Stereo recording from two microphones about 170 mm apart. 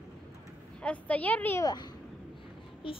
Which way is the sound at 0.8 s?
10° left (ahead or behind).